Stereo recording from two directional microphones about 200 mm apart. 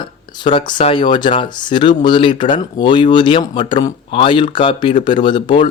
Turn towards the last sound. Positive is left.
turn(degrees=25)  # may be behind; listen again after turning